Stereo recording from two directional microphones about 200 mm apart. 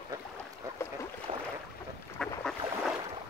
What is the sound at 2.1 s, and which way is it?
Boat, 5° left (ahead or behind).